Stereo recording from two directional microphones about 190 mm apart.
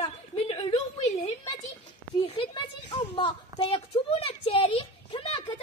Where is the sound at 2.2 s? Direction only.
25° left (ahead or behind).